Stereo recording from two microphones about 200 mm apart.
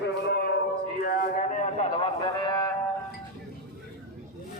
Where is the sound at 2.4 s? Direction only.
20° left (ahead or behind).